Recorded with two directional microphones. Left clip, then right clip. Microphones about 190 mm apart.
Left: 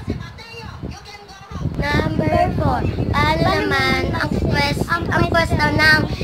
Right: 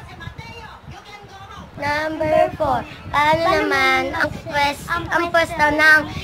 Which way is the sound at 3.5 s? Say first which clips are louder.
Right 2 dB; 20° right (ahead or behind).